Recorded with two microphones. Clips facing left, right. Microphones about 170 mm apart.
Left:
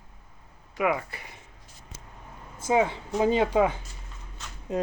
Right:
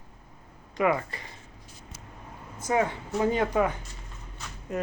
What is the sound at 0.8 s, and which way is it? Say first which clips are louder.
Speech: right 1 dB; 10° left (ahead or behind).